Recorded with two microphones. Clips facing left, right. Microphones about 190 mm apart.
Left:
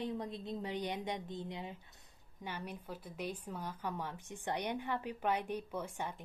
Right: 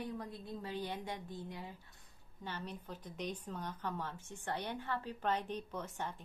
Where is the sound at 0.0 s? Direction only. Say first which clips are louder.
Left 4 dB; 20° left (ahead or behind).